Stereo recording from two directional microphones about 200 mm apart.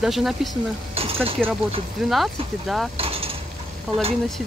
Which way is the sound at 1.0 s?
30° right (ahead or behind).